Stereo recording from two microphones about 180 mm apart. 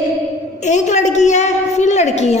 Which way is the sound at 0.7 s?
40° left (ahead or behind).